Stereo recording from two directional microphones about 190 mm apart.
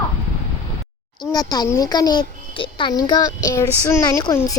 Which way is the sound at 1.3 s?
20° left (ahead or behind).